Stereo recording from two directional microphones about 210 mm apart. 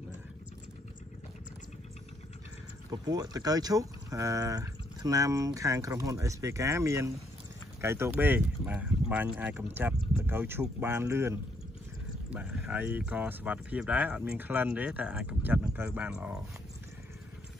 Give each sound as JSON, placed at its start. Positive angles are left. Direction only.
{"t": 2.9, "sound": "speech", "side_deg": -20}